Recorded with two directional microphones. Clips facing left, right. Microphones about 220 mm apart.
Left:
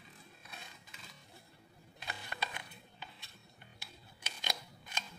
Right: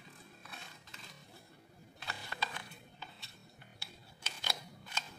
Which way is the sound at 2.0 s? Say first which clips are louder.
Even; 15° left (ahead or behind).